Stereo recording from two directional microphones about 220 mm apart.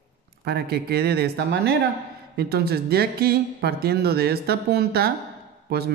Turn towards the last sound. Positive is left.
turn(degrees=-45)  # may be behind; listen again after turning